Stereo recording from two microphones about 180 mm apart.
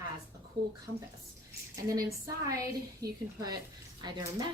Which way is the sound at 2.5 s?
20° right (ahead or behind).